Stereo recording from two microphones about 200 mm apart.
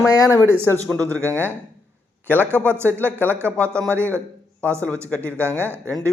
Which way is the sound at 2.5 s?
10° right (ahead or behind).